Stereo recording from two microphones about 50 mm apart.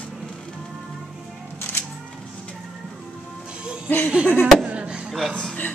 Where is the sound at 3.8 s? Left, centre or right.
Left.